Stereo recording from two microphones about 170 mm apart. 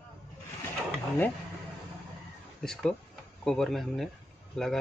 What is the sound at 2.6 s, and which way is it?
Speech, 5° left (ahead or behind).